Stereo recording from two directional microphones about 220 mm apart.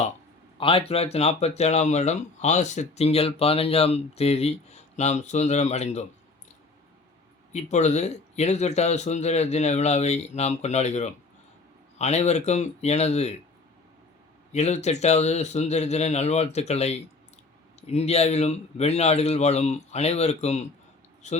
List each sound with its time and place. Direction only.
0.6 s speech: 25° left (ahead or behind)
7.5 s speech: 30° left (ahead or behind)
14.5 s speech: 30° left (ahead or behind)